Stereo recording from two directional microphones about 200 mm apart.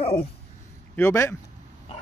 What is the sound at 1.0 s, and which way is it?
Speech, 10° left (ahead or behind).